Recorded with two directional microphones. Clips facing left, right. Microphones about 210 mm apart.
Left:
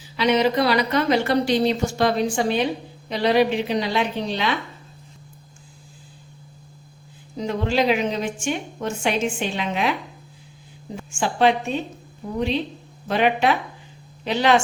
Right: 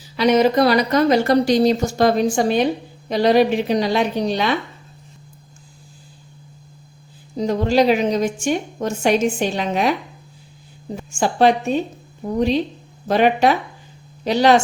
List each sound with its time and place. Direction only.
0.2 s a woman's voice: 45° right (ahead or behind)
7.3 s a woman's voice: 40° right (ahead or behind)
11.1 s a woman's voice: 40° right (ahead or behind)
13.1 s a woman's voice: 40° right (ahead or behind)